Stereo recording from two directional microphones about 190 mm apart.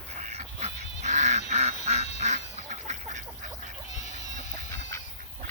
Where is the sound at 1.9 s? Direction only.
35° right (ahead or behind).